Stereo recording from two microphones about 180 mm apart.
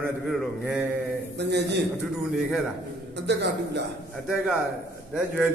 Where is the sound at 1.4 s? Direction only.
70° right (ahead or behind).